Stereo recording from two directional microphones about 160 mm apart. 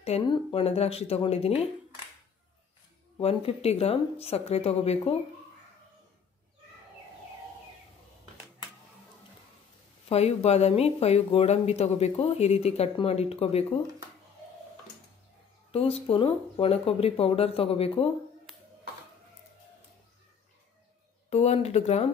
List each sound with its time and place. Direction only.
0.3 s speech: 35° left (ahead or behind)
3.2 s speech: 40° left (ahead or behind)
10.0 s speech: 40° left (ahead or behind)
15.7 s speech: 40° left (ahead or behind)
21.3 s speech: 40° left (ahead or behind)